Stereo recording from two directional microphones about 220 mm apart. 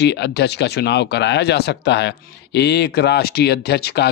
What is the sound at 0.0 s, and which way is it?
Speech, 50° left (ahead or behind).